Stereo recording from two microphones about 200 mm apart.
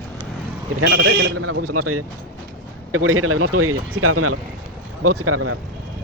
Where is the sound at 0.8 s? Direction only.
65° right (ahead or behind).